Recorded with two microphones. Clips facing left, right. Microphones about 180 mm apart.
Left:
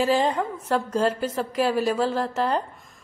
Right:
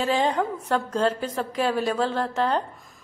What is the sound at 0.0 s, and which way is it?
A woman's voice, 5° left (ahead or behind).